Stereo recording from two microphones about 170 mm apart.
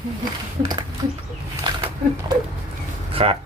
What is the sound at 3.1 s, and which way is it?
Speech, 35° right (ahead or behind).